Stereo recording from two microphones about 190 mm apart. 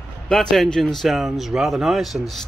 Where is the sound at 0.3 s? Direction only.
5° left (ahead or behind).